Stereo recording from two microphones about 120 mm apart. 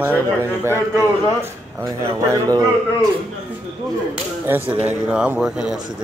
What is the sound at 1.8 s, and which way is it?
Speech, 30° right (ahead or behind).